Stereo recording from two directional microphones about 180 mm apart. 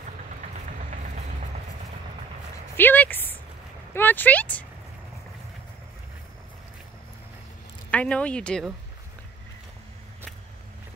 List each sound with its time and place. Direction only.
0.7 s vehicle: 45° right (ahead or behind)
2.8 s speech: 10° left (ahead or behind)
3.9 s a sound: 10° left (ahead or behind)
7.9 s speech: 5° left (ahead or behind)